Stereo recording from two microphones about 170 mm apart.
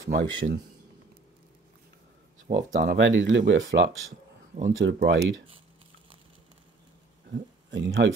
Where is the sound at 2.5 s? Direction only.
40° right (ahead or behind).